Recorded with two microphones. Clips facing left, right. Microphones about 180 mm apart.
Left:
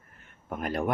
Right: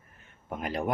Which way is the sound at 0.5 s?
55° left (ahead or behind).